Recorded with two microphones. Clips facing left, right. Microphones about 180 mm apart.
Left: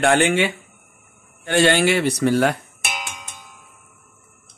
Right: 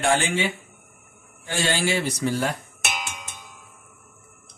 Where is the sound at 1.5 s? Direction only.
65° left (ahead or behind).